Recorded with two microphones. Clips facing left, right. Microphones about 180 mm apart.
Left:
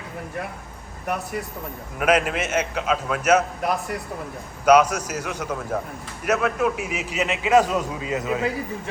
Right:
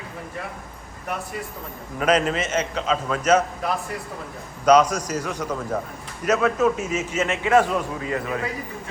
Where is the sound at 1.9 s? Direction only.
5° left (ahead or behind).